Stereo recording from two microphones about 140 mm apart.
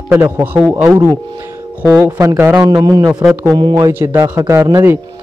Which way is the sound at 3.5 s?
30° right (ahead or behind).